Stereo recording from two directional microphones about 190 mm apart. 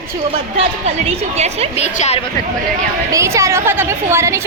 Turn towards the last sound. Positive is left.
turn(degrees=-15)  # may be behind; listen again after turning